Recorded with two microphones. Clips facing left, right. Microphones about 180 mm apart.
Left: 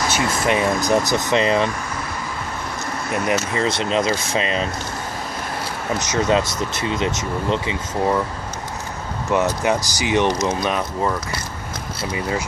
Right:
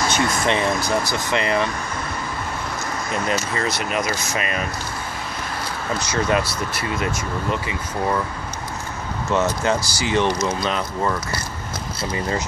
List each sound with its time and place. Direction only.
0.5 s speech: 15° left (ahead or behind)
3.3 s speech: 20° left (ahead or behind)
5.9 s speech: 20° left (ahead or behind)
9.3 s speech: 15° left (ahead or behind)